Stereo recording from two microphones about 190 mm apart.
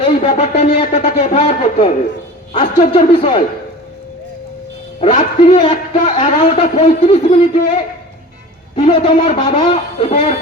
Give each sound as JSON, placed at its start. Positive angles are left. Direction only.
{"t": 0.0, "sound": "a man's voice", "side_deg": 35}
{"t": 4.9, "sound": "a man's voice", "side_deg": 30}
{"t": 8.7, "sound": "a man's voice", "side_deg": 30}